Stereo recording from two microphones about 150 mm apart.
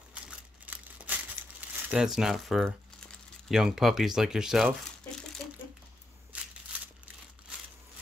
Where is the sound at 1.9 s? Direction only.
5° right (ahead or behind).